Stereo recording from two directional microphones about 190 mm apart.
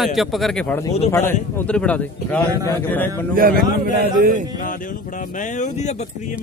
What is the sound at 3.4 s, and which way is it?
Speech, 50° right (ahead or behind).